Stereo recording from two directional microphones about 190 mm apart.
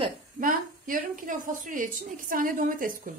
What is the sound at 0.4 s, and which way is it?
A woman's voice, 45° right (ahead or behind).